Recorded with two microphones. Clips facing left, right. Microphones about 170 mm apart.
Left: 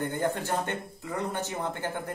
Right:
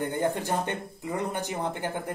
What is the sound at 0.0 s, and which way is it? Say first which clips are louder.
Speech: right 2 dB; 15° right (ahead or behind).